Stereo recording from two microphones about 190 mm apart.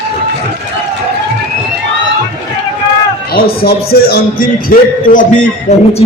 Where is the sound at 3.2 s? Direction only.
50° left (ahead or behind).